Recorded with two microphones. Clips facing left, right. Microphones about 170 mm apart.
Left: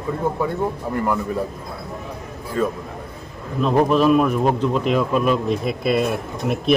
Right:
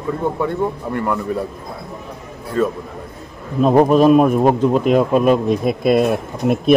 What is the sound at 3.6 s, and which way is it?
A man's voice, 45° right (ahead or behind).